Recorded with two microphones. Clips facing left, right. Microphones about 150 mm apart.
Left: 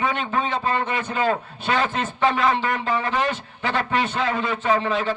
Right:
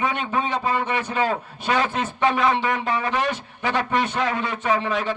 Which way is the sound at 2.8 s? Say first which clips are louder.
Even; 15° right (ahead or behind).